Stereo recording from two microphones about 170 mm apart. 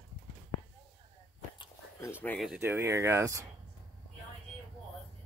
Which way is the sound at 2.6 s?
15° right (ahead or behind).